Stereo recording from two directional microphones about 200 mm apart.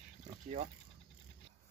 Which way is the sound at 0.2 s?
35° right (ahead or behind).